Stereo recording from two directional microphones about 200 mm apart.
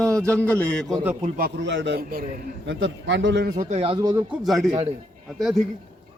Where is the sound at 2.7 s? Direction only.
65° right (ahead or behind).